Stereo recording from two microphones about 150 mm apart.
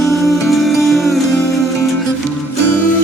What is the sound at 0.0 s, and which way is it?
Music, centre (ahead or behind).